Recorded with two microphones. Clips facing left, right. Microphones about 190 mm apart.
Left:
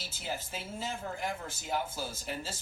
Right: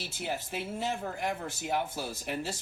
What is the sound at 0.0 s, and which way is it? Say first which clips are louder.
Speech: right 4 dB; 65° right (ahead or behind).